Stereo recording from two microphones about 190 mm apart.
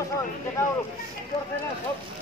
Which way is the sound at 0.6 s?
15° left (ahead or behind).